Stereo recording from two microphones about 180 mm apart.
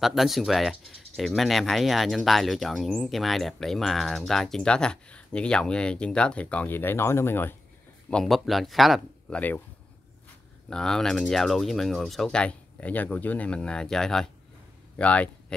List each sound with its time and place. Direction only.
0.0 s speech: centre (ahead or behind)
8.1 s speech: centre (ahead or behind)
10.7 s speech: 5° left (ahead or behind)